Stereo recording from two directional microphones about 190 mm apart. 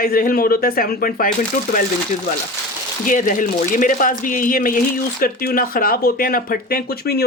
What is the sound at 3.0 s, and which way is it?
Speech, 45° left (ahead or behind).